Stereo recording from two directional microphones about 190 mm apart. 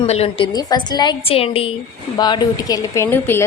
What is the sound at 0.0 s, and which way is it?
A woman's voice, 30° left (ahead or behind).